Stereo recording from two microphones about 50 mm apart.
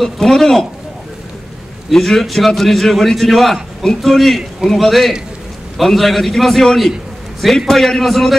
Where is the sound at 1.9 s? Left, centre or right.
Centre.